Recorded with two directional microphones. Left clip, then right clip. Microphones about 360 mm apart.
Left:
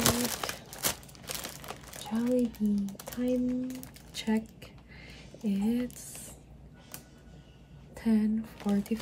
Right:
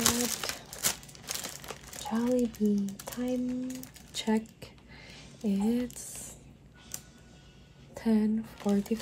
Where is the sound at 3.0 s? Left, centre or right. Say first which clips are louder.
Left 2 dB; centre.